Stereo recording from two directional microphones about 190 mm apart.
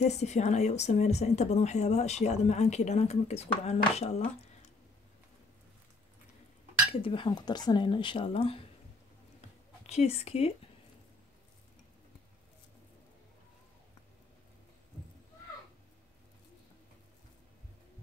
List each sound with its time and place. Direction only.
0.0 s a woman's voice: 35° left (ahead or behind)
6.9 s speech: 30° left (ahead or behind)
9.8 s a woman's voice: 35° left (ahead or behind)